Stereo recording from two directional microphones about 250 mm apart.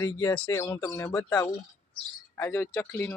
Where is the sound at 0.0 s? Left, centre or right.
Centre.